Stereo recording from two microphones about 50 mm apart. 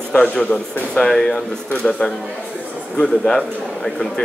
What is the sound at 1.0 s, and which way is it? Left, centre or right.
Speech, centre.